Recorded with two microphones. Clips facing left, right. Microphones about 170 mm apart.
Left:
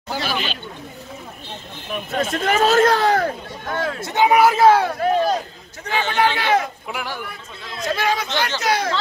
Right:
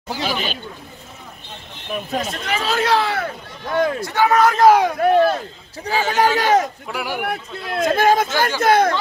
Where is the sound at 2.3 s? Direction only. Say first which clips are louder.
Left 11 dB; 50° left (ahead or behind).